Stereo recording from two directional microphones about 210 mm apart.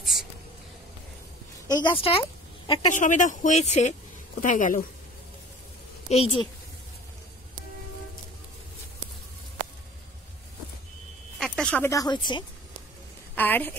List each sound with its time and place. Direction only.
1.8 s a woman's voice: 25° left (ahead or behind)
2.9 s speech: 35° left (ahead or behind)
6.0 s a woman's voice: 30° left (ahead or behind)
11.3 s speech: centre (ahead or behind); by 12.4 s 20° left (ahead or behind)
13.3 s a woman's voice: 10° left (ahead or behind)